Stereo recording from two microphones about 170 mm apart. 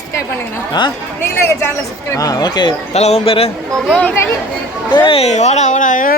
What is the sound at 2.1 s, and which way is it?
Speech, 20° left (ahead or behind).